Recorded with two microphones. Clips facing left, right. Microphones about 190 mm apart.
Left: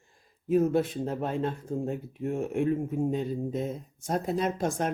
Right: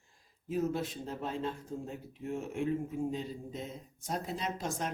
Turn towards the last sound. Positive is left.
turn(degrees=55)  # may be behind; listen again after turning